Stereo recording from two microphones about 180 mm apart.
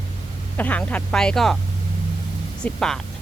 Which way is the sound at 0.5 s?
10° left (ahead or behind).